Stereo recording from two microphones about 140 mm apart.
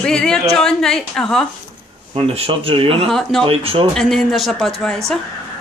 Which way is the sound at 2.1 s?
40° right (ahead or behind).